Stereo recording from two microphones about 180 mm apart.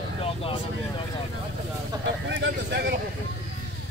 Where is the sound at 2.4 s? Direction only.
70° right (ahead or behind).